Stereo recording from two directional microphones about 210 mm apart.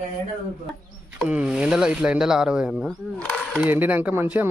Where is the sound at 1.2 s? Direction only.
5° right (ahead or behind).